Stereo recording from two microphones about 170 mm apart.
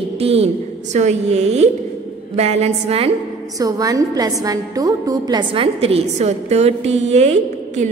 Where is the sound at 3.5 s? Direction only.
20° right (ahead or behind).